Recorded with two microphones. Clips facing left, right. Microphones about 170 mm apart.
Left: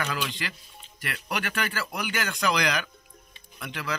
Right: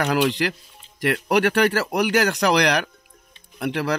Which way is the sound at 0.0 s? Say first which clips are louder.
Right 11 dB; 75° right (ahead or behind).